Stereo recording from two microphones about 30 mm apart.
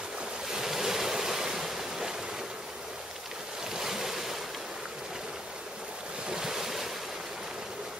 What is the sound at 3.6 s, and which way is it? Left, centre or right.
Waves, centre.